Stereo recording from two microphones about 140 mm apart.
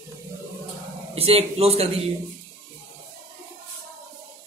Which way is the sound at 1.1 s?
45° right (ahead or behind).